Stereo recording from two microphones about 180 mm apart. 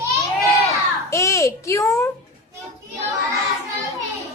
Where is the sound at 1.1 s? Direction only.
15° left (ahead or behind).